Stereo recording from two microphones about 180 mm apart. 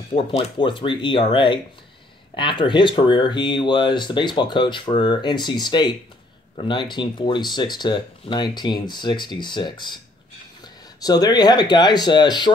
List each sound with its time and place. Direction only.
0.1 s speech: 30° left (ahead or behind)
11.0 s speech: 20° left (ahead or behind)